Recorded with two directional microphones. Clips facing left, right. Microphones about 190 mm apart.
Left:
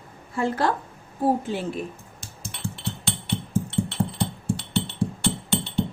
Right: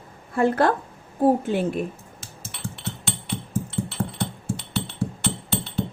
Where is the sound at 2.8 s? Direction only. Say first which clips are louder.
Right 1 dB; centre (ahead or behind).